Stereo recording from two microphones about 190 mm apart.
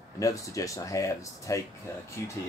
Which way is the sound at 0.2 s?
15° left (ahead or behind).